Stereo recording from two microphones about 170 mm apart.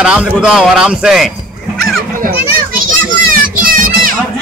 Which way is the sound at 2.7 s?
55° right (ahead or behind).